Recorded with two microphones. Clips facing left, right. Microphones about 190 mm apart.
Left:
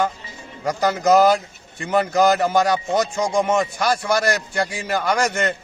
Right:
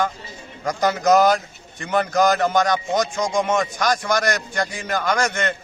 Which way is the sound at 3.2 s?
35° left (ahead or behind).